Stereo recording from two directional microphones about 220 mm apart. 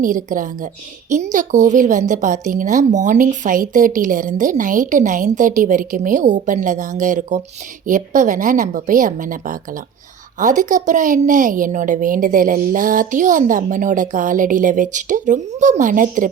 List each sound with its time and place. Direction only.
0.0 s a woman's voice: 40° right (ahead or behind)